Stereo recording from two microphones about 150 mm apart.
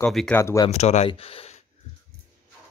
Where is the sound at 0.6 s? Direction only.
45° left (ahead or behind).